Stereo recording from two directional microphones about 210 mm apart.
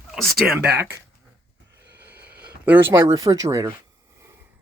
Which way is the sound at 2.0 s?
10° right (ahead or behind).